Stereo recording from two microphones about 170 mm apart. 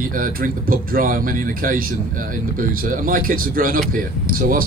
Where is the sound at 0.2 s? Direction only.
55° right (ahead or behind).